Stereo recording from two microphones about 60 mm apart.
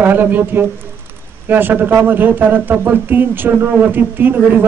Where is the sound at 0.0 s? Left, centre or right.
Right.